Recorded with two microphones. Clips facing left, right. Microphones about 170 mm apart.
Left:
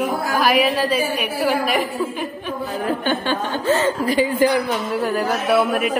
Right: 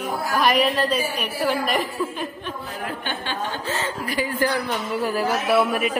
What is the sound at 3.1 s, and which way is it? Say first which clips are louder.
Chuckle: left 8 dB; 50° left (ahead or behind).